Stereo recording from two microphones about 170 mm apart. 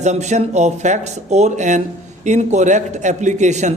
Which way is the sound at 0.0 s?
45° right (ahead or behind).